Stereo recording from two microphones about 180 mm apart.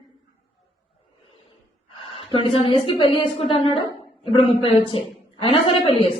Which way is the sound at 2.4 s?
30° left (ahead or behind).